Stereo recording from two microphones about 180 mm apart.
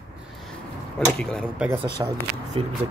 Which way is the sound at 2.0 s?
20° right (ahead or behind).